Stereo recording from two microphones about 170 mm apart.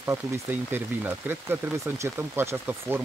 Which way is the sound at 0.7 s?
10° right (ahead or behind).